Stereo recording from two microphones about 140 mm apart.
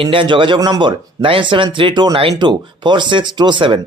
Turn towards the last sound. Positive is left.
turn(degrees=-35)  # may be behind; listen again after turning